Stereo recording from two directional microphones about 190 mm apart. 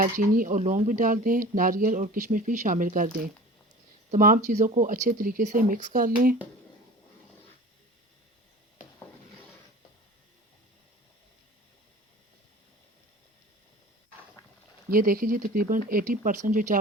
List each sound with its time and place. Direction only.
0.0 s speech: 45° right (ahead or behind)
4.1 s speech: 45° right (ahead or behind)
14.8 s speech: 50° right (ahead or behind)